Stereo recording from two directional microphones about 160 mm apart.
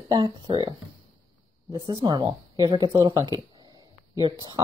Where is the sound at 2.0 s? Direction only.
30° right (ahead or behind).